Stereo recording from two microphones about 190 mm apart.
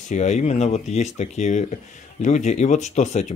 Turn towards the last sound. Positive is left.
turn(degrees=35)  # may be behind; listen again after turning